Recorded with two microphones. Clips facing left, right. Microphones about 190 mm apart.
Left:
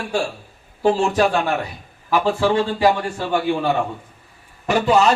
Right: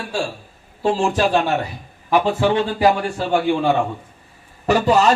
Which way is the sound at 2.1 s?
15° right (ahead or behind).